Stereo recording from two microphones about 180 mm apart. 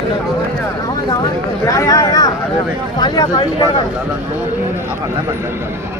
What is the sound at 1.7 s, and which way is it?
Speech, 20° left (ahead or behind).